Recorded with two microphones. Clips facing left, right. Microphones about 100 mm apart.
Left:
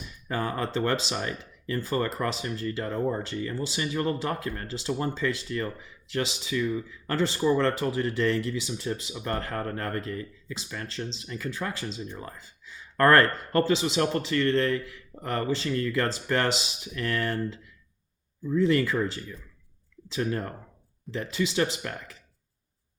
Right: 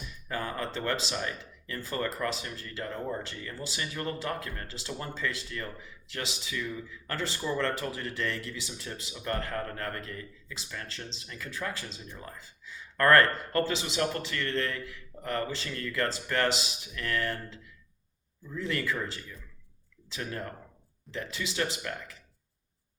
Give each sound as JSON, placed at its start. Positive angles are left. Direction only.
{"t": 0.3, "sound": "speech", "side_deg": 30}
{"t": 13.0, "sound": "speech", "side_deg": 30}
{"t": 18.5, "sound": "speech", "side_deg": 30}